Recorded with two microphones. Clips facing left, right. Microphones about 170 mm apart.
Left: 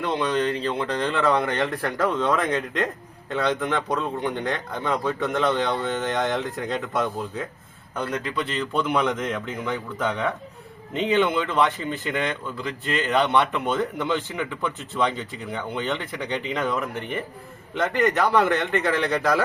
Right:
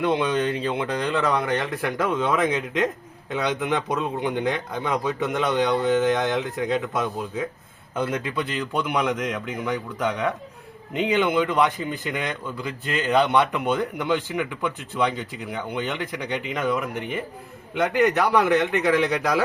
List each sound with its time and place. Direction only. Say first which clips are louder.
0.0 s speech: right 2 dB; 10° right (ahead or behind)
10.9 s speech: even; 10° right (ahead or behind)